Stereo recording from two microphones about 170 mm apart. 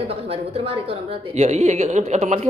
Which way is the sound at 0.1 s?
35° right (ahead or behind).